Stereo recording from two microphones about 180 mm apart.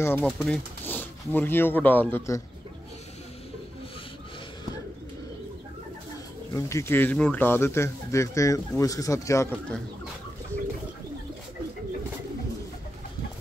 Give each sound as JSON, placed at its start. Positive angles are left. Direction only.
{"t": 0.0, "sound": "a man's voice", "side_deg": 10}
{"t": 6.5, "sound": "a man's voice", "side_deg": 15}